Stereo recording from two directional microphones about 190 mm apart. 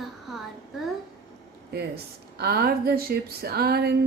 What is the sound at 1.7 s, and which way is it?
Speech, 55° right (ahead or behind).